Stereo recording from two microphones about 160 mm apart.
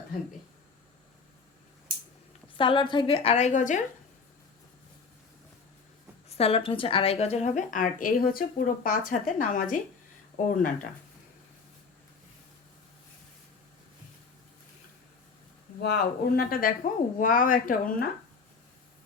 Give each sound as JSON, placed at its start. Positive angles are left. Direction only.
{"t": 2.6, "sound": "a woman's voice", "side_deg": 30}
{"t": 6.2, "sound": "a woman's voice", "side_deg": 40}
{"t": 15.8, "sound": "speech", "side_deg": 80}